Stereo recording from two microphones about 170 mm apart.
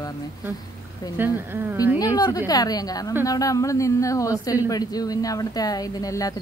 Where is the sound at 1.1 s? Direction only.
10° right (ahead or behind).